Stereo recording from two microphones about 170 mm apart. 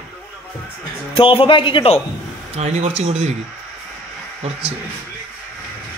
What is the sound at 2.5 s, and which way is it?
Speech, 40° right (ahead or behind).